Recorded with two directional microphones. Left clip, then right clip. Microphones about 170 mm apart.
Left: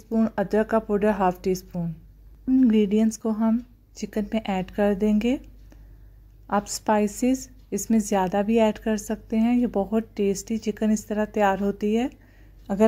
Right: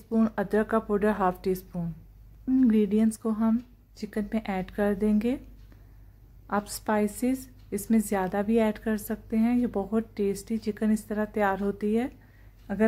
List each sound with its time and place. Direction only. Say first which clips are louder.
0.1 s a woman's voice: left 3 dB; 5° left (ahead or behind)
6.4 s a woman's voice: left 5 dB; 15° left (ahead or behind)
12.7 s speech: left 5 dB; 25° left (ahead or behind)